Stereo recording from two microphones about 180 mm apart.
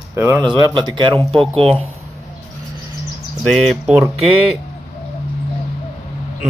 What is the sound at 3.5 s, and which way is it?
Speech, 5° right (ahead or behind).